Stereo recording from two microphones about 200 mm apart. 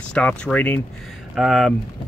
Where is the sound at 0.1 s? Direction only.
5° left (ahead or behind).